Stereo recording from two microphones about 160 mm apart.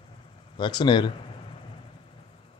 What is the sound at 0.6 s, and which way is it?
Speech, 30° left (ahead or behind).